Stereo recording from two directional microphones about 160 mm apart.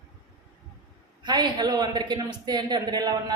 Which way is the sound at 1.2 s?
25° right (ahead or behind).